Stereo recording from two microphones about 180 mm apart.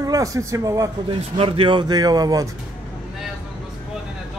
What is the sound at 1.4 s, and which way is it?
A man's voice, 30° right (ahead or behind).